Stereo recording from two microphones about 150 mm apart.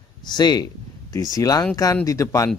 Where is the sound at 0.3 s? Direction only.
30° left (ahead or behind).